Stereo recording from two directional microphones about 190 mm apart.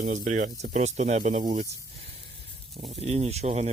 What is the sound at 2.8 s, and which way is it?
Speech, 35° right (ahead or behind).